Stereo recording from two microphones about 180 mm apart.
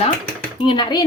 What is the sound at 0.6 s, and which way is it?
Speech, 25° left (ahead or behind).